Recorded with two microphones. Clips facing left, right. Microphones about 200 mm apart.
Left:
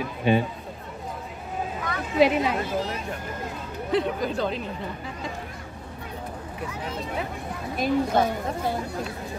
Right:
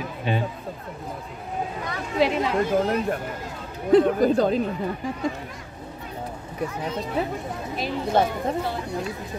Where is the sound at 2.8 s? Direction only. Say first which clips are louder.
Right 7 dB; 55° right (ahead or behind).